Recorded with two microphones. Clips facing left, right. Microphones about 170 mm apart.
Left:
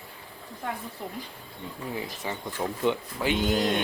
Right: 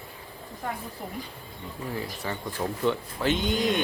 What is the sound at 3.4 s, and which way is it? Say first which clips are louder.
Goat: left 1 dB; centre (ahead or behind).